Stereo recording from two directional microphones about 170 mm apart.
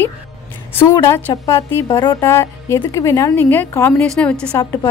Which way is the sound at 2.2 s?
15° left (ahead or behind).